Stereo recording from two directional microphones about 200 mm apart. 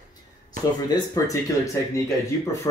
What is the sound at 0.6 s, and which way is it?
Speech, 20° left (ahead or behind).